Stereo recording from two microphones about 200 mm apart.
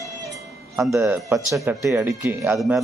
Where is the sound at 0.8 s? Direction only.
15° right (ahead or behind).